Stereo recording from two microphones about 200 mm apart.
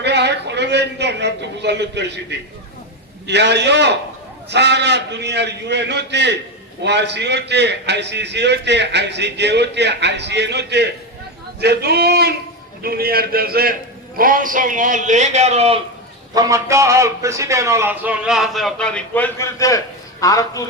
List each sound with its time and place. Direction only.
0.0 s a man's voice: 55° right (ahead or behind)
3.2 s a man's voice: 60° right (ahead or behind); by 15.8 s 30° right (ahead or behind)
16.3 s a man's voice: 15° right (ahead or behind); by 20.7 s 15° left (ahead or behind)